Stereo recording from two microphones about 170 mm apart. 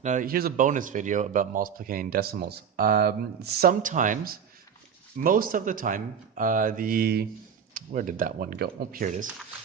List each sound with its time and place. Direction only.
0.0 s speech: 50° right (ahead or behind)